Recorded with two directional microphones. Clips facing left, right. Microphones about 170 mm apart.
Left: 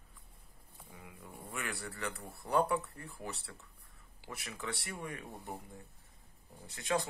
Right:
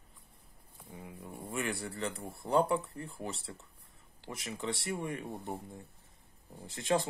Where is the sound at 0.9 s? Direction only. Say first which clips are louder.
Right 6 dB; 30° right (ahead or behind).